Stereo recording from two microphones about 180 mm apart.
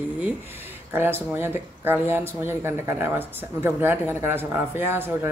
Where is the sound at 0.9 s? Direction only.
10° right (ahead or behind).